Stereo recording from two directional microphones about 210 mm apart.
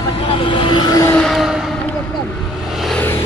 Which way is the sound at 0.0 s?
25° left (ahead or behind).